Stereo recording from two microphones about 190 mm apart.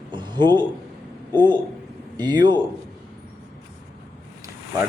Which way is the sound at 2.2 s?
20° right (ahead or behind).